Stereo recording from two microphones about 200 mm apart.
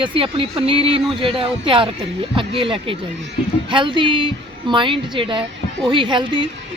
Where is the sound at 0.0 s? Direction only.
25° right (ahead or behind).